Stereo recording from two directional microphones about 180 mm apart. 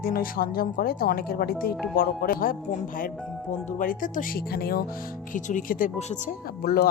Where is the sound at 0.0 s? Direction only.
55° left (ahead or behind).